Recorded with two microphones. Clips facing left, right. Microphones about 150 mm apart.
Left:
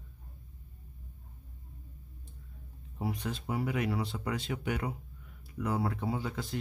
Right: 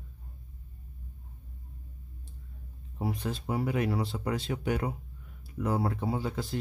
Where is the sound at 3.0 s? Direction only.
35° right (ahead or behind).